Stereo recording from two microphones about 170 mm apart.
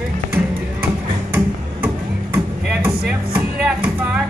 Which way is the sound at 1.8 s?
15° right (ahead or behind).